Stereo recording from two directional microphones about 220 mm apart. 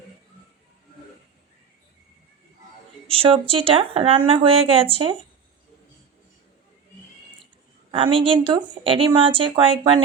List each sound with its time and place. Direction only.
3.1 s speech: 25° right (ahead or behind)
7.9 s speech: 20° right (ahead or behind)